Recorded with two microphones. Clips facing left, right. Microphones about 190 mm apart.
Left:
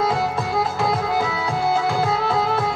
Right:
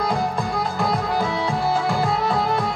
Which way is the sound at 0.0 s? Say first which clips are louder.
Left 1 dB; 5° left (ahead or behind).